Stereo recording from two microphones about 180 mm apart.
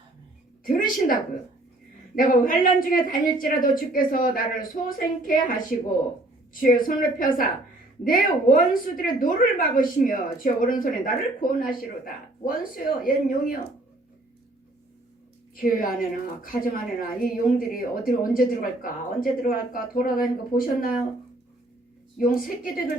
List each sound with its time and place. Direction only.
0.6 s a woman's voice: 50° left (ahead or behind)
2.1 s a woman's voice: 50° left (ahead or behind)
5.7 s speech: centre (ahead or behind)
6.5 s a woman's voice: 50° left (ahead or behind)
15.5 s a woman's voice: 50° left (ahead or behind)
22.2 s a woman's voice: 50° left (ahead or behind)